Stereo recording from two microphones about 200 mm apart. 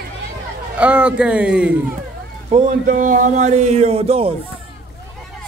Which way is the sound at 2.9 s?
40° right (ahead or behind).